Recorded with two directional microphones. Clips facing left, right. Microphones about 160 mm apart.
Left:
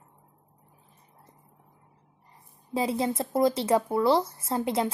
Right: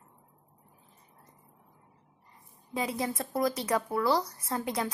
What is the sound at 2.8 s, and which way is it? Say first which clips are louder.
Speech: left 5 dB; 30° left (ahead or behind).